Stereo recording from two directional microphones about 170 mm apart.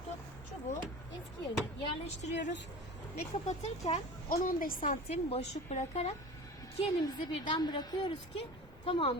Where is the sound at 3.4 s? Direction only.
40° left (ahead or behind).